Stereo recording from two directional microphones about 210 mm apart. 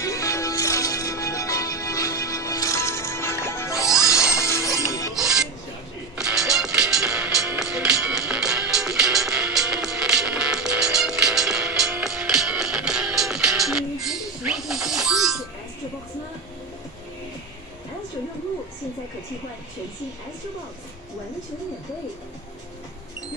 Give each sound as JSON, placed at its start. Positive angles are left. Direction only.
{"t": 0.0, "sound": "music", "side_deg": 15}
{"t": 3.7, "sound": "music", "side_deg": -5}
{"t": 4.5, "sound": "music", "side_deg": 15}
{"t": 5.1, "sound": "filing", "side_deg": 0}
{"t": 6.1, "sound": "music", "side_deg": -5}